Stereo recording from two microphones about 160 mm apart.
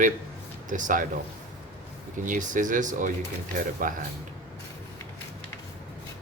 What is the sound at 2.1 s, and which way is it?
Speech, 55° right (ahead or behind).